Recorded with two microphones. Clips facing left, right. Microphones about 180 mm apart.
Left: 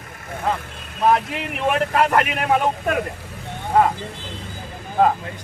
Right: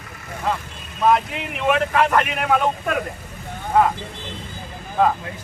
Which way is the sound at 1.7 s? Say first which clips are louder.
Right 1 dB; 40° left (ahead or behind).